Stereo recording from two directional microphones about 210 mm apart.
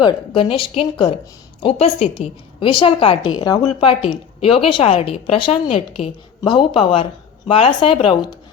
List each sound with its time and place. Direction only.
0.0 s a woman's voice: 25° left (ahead or behind)